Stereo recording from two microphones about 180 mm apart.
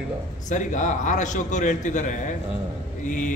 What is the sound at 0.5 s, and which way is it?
A man's voice, 45° left (ahead or behind).